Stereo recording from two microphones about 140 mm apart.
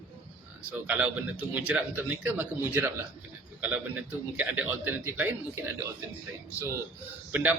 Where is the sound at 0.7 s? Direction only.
10° right (ahead or behind).